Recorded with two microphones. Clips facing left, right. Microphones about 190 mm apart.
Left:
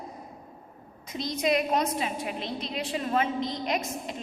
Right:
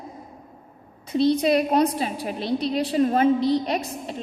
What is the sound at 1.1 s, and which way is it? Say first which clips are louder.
A woman's voice: right 8 dB; 30° right (ahead or behind).